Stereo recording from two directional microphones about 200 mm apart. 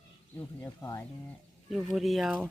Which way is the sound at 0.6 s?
10° left (ahead or behind).